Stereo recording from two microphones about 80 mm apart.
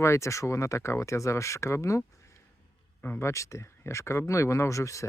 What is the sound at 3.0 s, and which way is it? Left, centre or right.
Speech, left.